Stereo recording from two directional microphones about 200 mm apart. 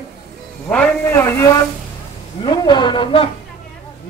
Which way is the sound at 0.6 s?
5° left (ahead or behind).